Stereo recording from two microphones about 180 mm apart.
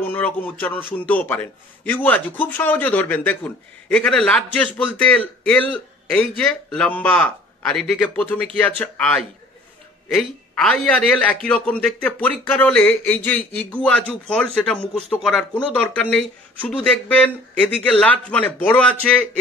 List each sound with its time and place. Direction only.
0.0 s speech: 10° left (ahead or behind)